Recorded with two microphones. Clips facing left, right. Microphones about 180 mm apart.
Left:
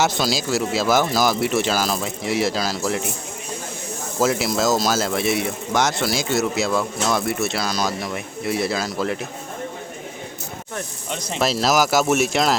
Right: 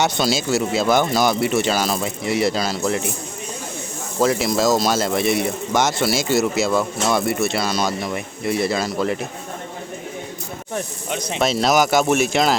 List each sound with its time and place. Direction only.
0.0 s speech: centre (ahead or behind)
4.2 s speech: centre (ahead or behind)
11.1 s speech: centre (ahead or behind)